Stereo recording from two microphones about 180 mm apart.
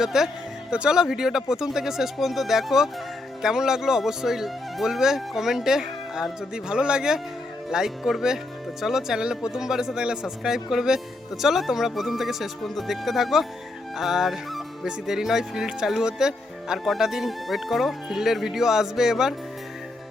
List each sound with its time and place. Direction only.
0.0 s speech: centre (ahead or behind)